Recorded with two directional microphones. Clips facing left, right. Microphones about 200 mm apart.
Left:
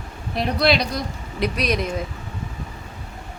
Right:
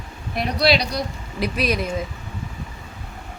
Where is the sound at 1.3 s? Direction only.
5° right (ahead or behind).